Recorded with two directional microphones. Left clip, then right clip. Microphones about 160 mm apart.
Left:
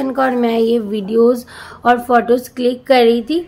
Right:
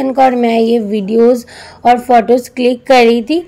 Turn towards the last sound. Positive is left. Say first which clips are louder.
# right 3 dB
turn(degrees=-25)  # may be behind; listen again after turning